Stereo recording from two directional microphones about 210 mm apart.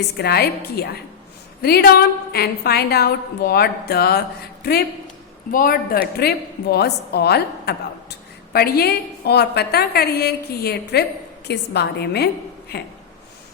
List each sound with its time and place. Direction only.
0.2 s a woman's voice: 50° left (ahead or behind)
5.5 s a woman's voice: 40° left (ahead or behind)